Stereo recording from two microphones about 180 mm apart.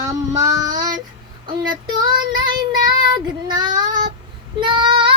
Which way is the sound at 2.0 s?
25° right (ahead or behind).